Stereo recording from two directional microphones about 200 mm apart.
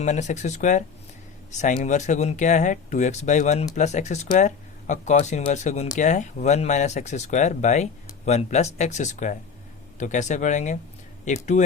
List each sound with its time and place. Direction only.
0.0 s speech: 35° left (ahead or behind)